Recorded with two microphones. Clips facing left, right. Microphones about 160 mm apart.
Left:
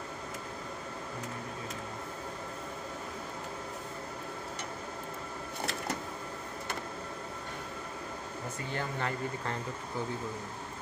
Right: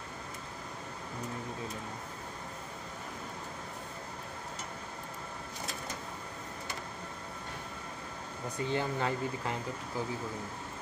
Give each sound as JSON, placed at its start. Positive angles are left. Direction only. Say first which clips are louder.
{"t": 8.7, "sound": "speech", "louder": "right 2 dB", "side_deg": -15}